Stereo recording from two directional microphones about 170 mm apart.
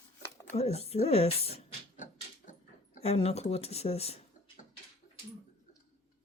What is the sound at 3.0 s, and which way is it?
Speech, 35° left (ahead or behind).